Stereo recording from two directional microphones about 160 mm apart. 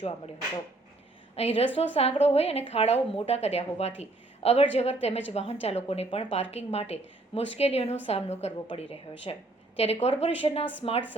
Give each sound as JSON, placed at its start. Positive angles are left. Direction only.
{"t": 1.4, "sound": "a woman's voice", "side_deg": 40}